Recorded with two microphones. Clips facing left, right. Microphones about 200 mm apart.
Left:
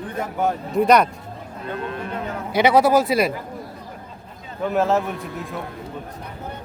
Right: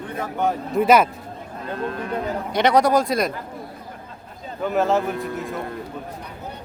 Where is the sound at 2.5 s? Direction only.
5° left (ahead or behind).